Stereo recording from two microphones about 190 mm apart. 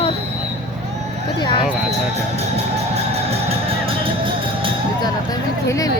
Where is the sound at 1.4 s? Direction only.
25° left (ahead or behind).